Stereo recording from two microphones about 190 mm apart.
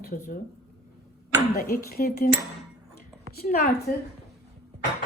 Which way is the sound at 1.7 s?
55° left (ahead or behind).